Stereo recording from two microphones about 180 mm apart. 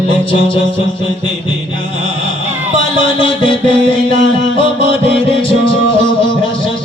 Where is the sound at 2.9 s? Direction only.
30° left (ahead or behind).